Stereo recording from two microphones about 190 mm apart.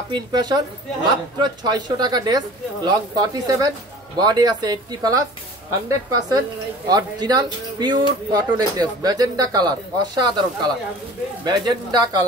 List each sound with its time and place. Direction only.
0.1 s speech: 20° right (ahead or behind)